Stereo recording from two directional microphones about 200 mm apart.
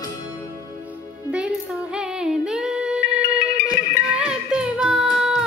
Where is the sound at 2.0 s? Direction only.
5° right (ahead or behind).